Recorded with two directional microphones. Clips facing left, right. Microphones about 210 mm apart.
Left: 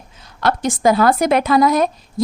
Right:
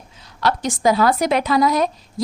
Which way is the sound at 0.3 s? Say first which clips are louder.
Left 2 dB; 50° left (ahead or behind).